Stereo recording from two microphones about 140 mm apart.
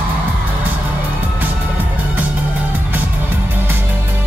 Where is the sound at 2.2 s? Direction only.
10° right (ahead or behind).